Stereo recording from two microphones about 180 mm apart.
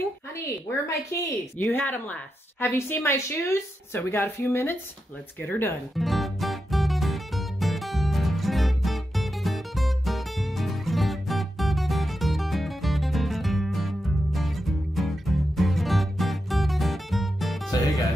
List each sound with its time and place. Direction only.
0.0 s a woman's voice: 15° left (ahead or behind)
5.9 s music: centre (ahead or behind)
17.6 s music: 20° left (ahead or behind)